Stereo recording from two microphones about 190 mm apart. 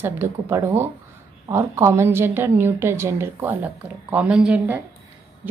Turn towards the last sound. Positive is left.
turn(degrees=-5)  # may be behind; listen again after turning